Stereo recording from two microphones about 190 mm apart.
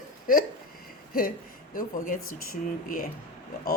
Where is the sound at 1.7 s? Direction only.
45° left (ahead or behind).